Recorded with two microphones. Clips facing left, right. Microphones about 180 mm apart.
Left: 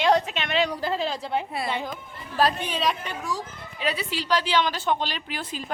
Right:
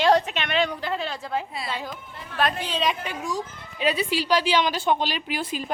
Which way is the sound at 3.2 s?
15° right (ahead or behind).